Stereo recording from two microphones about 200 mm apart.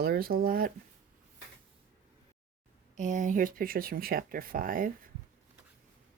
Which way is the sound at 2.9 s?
40° right (ahead or behind).